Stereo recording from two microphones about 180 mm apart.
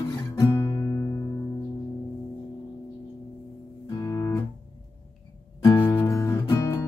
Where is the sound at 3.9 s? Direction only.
20° left (ahead or behind).